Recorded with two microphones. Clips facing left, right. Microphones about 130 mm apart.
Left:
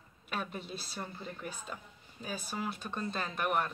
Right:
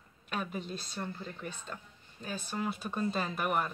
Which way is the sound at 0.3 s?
Centre (ahead or behind).